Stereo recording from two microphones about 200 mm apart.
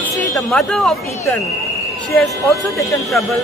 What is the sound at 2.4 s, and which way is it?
Speech, 15° left (ahead or behind).